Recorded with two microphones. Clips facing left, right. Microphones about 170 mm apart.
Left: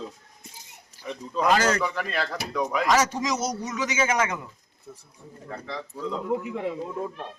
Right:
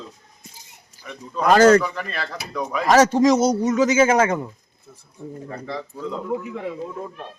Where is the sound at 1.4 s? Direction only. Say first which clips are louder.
Right 9 dB; 50° right (ahead or behind).